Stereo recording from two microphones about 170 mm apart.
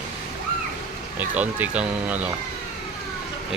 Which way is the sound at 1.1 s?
10° right (ahead or behind).